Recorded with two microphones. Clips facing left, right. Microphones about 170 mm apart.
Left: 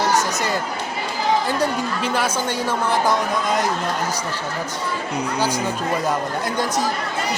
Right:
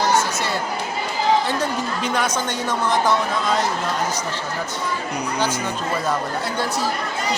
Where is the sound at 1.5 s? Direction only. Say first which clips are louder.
Left 2 dB; 10° left (ahead or behind).